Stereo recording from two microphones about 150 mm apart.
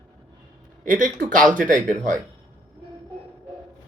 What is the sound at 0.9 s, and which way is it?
Speech, 60° right (ahead or behind).